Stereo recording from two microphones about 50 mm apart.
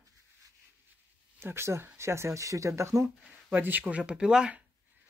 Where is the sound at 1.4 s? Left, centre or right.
Right.